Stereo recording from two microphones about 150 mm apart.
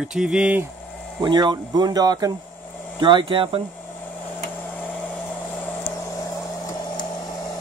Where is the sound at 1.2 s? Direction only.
30° right (ahead or behind).